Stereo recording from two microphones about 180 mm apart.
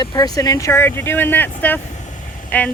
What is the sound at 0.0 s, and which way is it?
A woman's voice, 20° left (ahead or behind).